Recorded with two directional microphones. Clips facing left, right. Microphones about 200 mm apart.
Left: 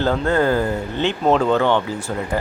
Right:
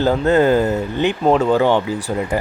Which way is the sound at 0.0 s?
15° right (ahead or behind).